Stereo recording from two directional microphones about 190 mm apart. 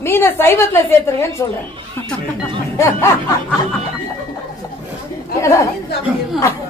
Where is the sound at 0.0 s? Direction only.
10° left (ahead or behind).